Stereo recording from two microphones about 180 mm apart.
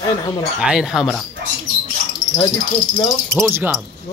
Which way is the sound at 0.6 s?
5° right (ahead or behind).